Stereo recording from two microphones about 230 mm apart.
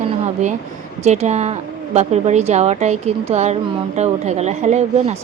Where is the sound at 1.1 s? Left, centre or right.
Right.